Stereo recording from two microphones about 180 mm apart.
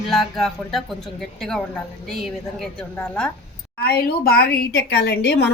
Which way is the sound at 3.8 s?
60° left (ahead or behind).